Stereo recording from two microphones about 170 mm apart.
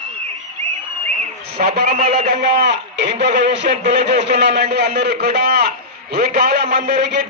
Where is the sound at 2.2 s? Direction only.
85° right.